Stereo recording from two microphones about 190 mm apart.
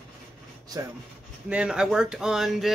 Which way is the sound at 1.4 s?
5° right (ahead or behind).